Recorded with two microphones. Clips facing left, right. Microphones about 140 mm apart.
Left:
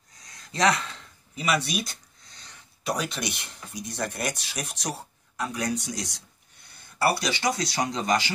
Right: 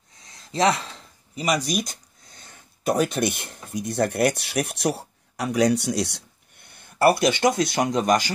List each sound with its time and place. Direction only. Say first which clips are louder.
0.6 s speech: right 2 dB; 30° right (ahead or behind); by 6.2 s 70° right (ahead or behind)
7.0 s speech: right 7 dB; 50° right (ahead or behind)